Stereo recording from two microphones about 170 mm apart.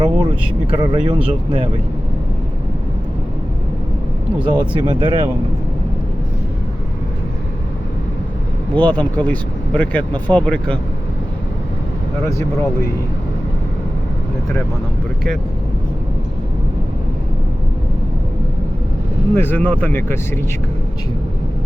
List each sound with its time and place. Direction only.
0.0 s speech: 30° right (ahead or behind)
4.7 s speech: 30° right (ahead or behind)
8.7 s speech: 10° left (ahead or behind)
19.3 s speech: 10° left (ahead or behind)